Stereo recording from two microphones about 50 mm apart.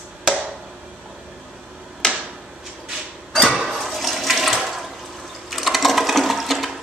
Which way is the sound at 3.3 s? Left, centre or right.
Centre.